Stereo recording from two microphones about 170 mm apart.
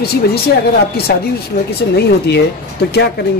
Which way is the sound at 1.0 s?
70° left (ahead or behind).